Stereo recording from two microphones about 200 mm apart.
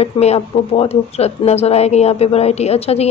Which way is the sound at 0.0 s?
30° left (ahead or behind).